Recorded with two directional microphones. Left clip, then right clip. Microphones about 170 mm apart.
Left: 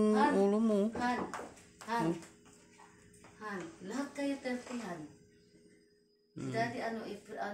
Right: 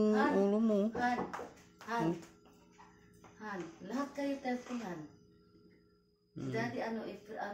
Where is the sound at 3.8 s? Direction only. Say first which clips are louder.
Right 1 dB; 45° right (ahead or behind).